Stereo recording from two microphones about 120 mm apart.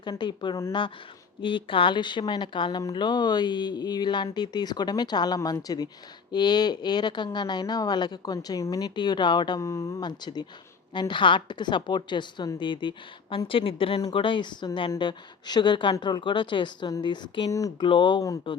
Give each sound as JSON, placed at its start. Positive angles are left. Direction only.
{"t": 0.0, "sound": "speech", "side_deg": 40}
{"t": 9.6, "sound": "speech", "side_deg": 25}
{"t": 10.0, "sound": "a woman's voice", "side_deg": 35}
{"t": 17.5, "sound": "speech", "side_deg": 30}
{"t": 17.8, "sound": "a woman's voice", "side_deg": 45}